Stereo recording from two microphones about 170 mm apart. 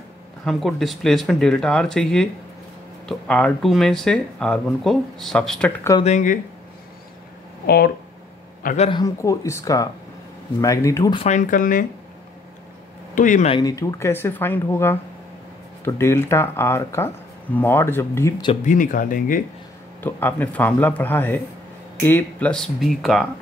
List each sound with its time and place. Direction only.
0.5 s speech: centre (ahead or behind)
6.0 s speech: 50° left (ahead or behind)
7.6 s speech: 60° left (ahead or behind)
8.7 s speech: 35° left (ahead or behind)
9.0 s speech: 20° left (ahead or behind)
11.1 s speech: 45° left (ahead or behind)
13.1 s speech: 50° left (ahead or behind)
13.5 s speech: 25° left (ahead or behind)
18.6 s speech: 50° left (ahead or behind)
20.0 s speech: 10° left (ahead or behind)